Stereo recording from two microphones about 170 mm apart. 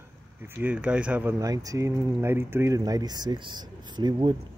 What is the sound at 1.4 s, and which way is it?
Speech, 20° right (ahead or behind).